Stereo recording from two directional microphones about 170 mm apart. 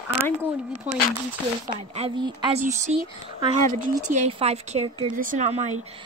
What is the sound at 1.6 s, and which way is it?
A woman's voice, 40° right (ahead or behind).